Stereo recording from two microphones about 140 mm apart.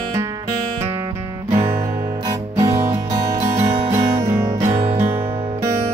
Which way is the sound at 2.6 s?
25° right (ahead or behind).